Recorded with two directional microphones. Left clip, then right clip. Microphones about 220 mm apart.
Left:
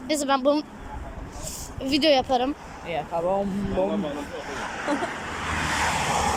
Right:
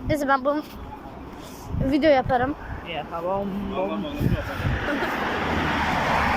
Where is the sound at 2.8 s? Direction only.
25° left (ahead or behind).